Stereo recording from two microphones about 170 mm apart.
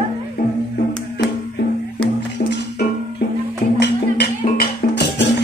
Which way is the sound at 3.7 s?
80° left.